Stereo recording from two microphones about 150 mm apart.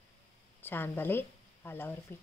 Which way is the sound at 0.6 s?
15° left (ahead or behind).